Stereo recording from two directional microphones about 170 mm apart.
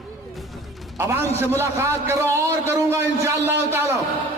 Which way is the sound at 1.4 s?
15° right (ahead or behind).